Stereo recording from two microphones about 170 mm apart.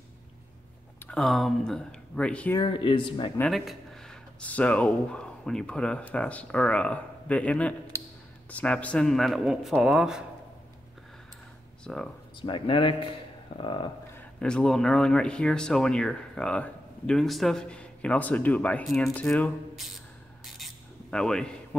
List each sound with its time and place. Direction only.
1.0 s speech: centre (ahead or behind)
2.5 s speech: 25° left (ahead or behind)
3.3 s speech: centre (ahead or behind)
7.9 s a sound: 15° right (ahead or behind)
8.5 s speech: 10° left (ahead or behind)
11.8 s speech: 5° left (ahead or behind)
12.4 s speech: 30° left (ahead or behind)
14.1 s speech: 5° left (ahead or behind)
20.5 s filing: centre (ahead or behind)